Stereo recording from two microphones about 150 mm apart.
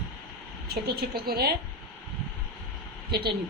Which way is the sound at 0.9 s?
90° right.